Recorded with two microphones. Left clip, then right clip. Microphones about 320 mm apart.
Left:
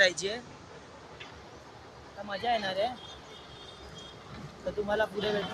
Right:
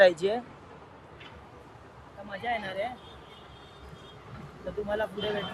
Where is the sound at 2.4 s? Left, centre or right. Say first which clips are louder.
Left 2 dB; centre.